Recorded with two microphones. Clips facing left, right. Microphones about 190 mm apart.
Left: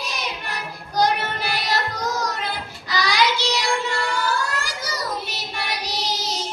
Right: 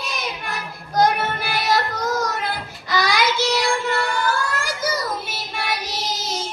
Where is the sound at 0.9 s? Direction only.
50° right (ahead or behind).